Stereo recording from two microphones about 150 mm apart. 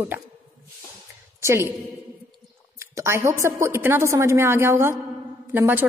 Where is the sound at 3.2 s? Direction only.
20° right (ahead or behind).